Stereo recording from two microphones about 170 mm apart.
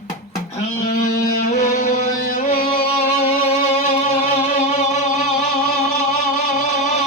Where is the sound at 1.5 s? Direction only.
50° left (ahead or behind).